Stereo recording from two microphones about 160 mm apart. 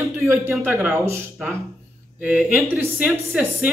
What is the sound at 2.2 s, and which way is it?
A man's voice, 10° right (ahead or behind).